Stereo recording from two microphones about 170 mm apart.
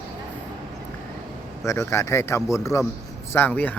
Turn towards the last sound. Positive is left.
turn(degrees=10)  # may be behind; listen again after turning